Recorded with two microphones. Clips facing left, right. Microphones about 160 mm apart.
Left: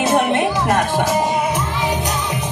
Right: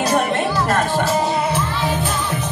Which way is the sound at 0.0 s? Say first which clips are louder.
Left 2 dB; 20° left (ahead or behind).